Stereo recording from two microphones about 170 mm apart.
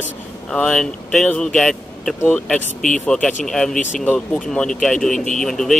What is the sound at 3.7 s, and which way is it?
Speech, 45° left (ahead or behind).